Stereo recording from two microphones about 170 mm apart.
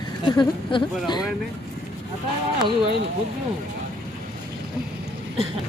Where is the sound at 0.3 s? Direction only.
25° left (ahead or behind).